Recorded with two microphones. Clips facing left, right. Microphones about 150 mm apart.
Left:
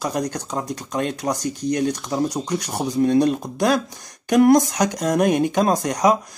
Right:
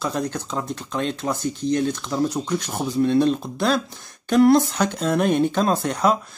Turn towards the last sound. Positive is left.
turn(degrees=10)  # may be behind; listen again after turning